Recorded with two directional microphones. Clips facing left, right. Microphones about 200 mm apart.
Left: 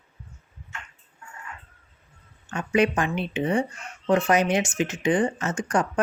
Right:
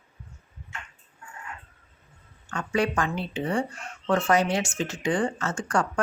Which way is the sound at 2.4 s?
20° left (ahead or behind).